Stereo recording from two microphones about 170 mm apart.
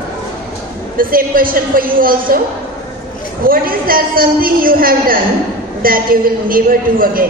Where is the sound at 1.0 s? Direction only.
55° right (ahead or behind).